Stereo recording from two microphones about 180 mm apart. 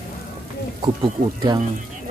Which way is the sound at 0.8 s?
25° right (ahead or behind).